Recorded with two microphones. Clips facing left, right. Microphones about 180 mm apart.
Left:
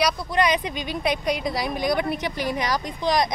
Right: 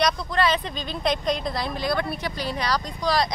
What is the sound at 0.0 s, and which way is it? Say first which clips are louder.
Speech: left 1 dB; 15° left (ahead or behind).